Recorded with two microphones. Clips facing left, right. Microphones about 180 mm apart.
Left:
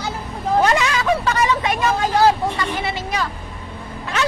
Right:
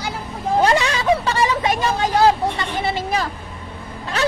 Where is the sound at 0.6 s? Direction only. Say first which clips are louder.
Right 1 dB; 30° right (ahead or behind).